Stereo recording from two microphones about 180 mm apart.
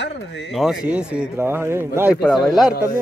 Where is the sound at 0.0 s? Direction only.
75° left (ahead or behind).